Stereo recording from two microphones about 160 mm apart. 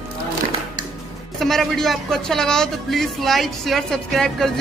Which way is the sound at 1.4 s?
Centre (ahead or behind).